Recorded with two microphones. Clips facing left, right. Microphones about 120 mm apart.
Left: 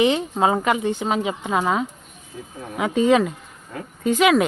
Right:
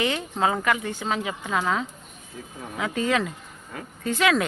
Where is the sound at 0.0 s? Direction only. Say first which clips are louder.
Left 6 dB; 20° left (ahead or behind).